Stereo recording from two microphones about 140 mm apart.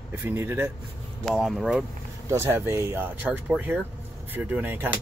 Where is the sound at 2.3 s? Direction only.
20° right (ahead or behind).